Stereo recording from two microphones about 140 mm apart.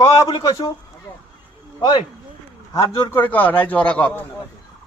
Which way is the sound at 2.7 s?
30° left (ahead or behind).